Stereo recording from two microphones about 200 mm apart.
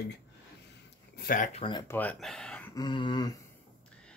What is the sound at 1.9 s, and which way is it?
Speech, 10° left (ahead or behind).